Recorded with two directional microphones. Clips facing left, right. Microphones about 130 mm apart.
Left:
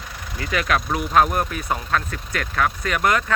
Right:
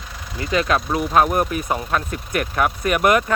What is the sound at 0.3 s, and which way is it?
Speech, 25° right (ahead or behind).